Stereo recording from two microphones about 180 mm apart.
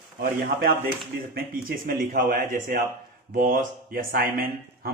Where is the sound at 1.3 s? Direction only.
50° right (ahead or behind).